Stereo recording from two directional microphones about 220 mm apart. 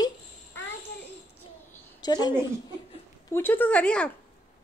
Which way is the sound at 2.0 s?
20° left (ahead or behind).